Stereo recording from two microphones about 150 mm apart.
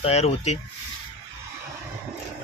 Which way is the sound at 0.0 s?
45° left (ahead or behind).